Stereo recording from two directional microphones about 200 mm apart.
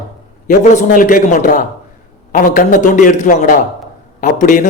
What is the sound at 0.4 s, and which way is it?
A man's voice, 40° left (ahead or behind).